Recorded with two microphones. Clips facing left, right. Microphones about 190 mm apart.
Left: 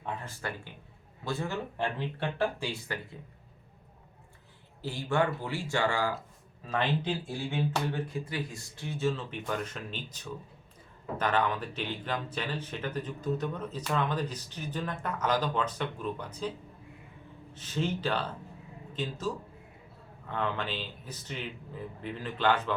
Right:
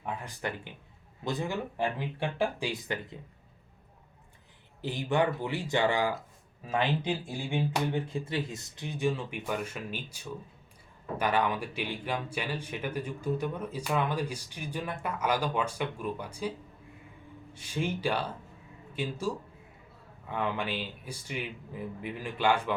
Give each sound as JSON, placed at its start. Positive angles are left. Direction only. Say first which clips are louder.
{"t": 0.0, "sound": "speech", "louder": "right 2 dB", "side_deg": -15}
{"t": 4.8, "sound": "speech", "louder": "right 1 dB", "side_deg": -20}
{"t": 17.5, "sound": "speech", "louder": "left 1 dB", "side_deg": -10}